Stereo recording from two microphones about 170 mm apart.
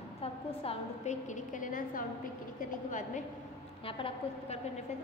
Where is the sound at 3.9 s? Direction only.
30° left (ahead or behind).